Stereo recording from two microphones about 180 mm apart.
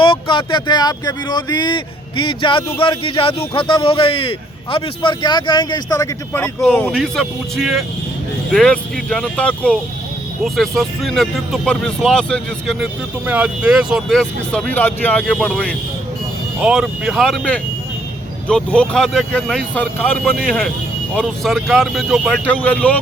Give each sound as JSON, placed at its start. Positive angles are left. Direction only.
{"t": 0.0, "sound": "speech", "side_deg": 30}
{"t": 6.9, "sound": "speech", "side_deg": 0}
{"t": 16.6, "sound": "speech", "side_deg": -5}